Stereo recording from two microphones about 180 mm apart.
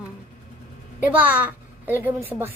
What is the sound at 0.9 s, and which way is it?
Speech, 10° right (ahead or behind).